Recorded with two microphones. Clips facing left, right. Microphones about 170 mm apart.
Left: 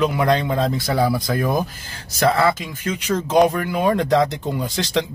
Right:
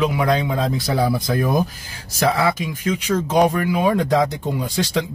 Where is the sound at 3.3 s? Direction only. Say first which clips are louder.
Left 1 dB; 5° right (ahead or behind).